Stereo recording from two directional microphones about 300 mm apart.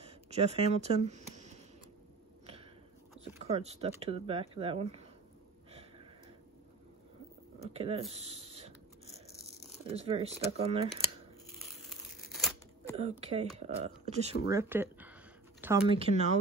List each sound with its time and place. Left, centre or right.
0.3 s speech: right
3.4 s speech: centre
7.7 s speech: centre
8.1 s a sound: centre
9.8 s speech: centre
11.5 s crumpling: centre
13.2 s speech: centre
14.5 s speech: centre
15.9 s speech: right